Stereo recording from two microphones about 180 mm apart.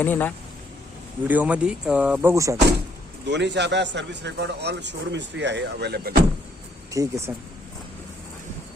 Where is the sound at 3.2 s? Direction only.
75° right (ahead or behind).